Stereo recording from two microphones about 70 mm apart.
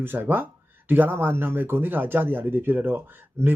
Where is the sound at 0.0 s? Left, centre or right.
Right.